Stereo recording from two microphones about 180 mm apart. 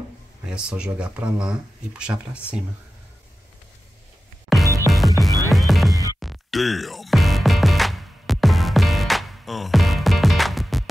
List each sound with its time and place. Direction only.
0.5 s speech: 5° right (ahead or behind)
4.5 s music: centre (ahead or behind)